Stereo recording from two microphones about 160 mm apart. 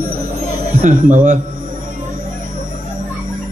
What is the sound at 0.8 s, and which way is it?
Speech, 50° right (ahead or behind).